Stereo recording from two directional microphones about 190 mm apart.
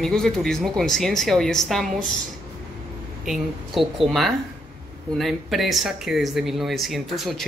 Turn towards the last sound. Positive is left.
turn(degrees=0)  # may be behind; listen again after turning